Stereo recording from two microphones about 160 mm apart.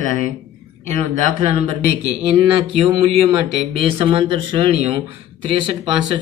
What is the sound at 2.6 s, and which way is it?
Speech, 35° right (ahead or behind).